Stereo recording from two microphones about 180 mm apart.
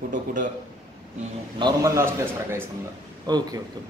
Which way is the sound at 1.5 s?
20° right (ahead or behind).